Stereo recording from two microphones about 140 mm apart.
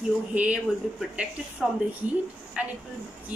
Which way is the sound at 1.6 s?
Centre (ahead or behind).